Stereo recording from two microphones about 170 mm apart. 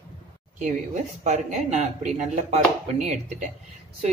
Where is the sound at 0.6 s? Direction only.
45° right (ahead or behind).